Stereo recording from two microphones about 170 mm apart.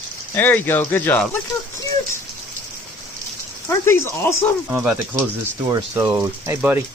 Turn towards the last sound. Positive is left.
turn(degrees=-15)  # may be behind; listen again after turning